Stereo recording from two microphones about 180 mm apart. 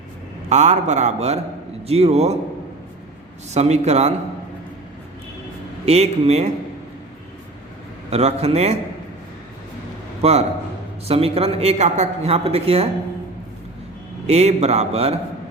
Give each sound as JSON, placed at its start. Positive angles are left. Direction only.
{"t": 0.5, "sound": "a man's voice", "side_deg": -40}
{"t": 3.5, "sound": "a man's voice", "side_deg": -40}
{"t": 5.8, "sound": "a man's voice", "side_deg": -35}
{"t": 8.1, "sound": "a man's voice", "side_deg": -35}
{"t": 10.2, "sound": "a man's voice", "side_deg": -35}
{"t": 14.3, "sound": "a man's voice", "side_deg": -35}